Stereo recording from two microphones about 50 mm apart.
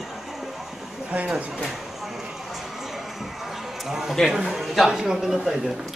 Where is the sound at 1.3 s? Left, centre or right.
Right.